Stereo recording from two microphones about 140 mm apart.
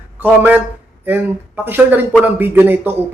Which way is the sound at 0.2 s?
10° right (ahead or behind).